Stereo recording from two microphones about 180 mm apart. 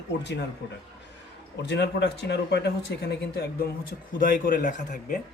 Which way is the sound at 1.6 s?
70° left (ahead or behind).